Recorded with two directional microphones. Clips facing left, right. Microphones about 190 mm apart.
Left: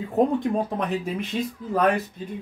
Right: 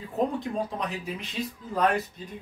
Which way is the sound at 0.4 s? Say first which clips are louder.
Left 6 dB; 55° left (ahead or behind).